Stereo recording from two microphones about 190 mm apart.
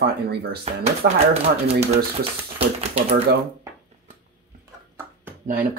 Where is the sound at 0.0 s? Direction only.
55° right (ahead or behind).